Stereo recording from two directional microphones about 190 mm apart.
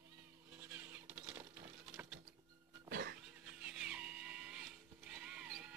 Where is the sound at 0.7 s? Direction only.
10° right (ahead or behind).